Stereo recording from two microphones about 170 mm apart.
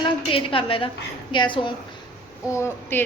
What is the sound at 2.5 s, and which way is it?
Speech, 15° left (ahead or behind).